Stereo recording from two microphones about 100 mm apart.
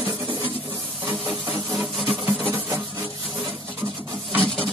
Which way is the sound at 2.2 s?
20° right (ahead or behind).